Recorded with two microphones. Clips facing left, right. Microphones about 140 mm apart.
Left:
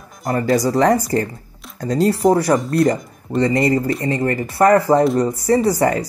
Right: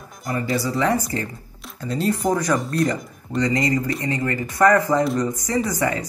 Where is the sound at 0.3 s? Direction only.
50° left (ahead or behind).